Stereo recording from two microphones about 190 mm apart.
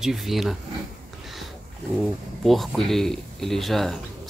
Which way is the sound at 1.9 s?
Centre (ahead or behind).